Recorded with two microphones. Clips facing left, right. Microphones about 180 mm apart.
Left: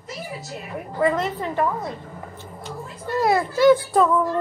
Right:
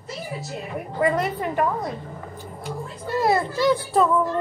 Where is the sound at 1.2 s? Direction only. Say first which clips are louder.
Right 1 dB; 10° right (ahead or behind).